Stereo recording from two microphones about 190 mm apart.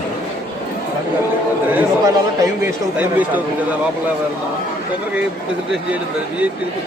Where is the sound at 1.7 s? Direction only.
15° right (ahead or behind).